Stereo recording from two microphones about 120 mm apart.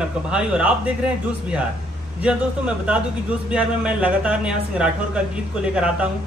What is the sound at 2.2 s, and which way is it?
A man's voice, 10° right (ahead or behind).